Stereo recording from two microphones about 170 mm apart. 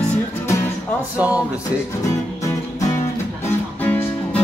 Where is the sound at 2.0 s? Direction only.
20° left (ahead or behind).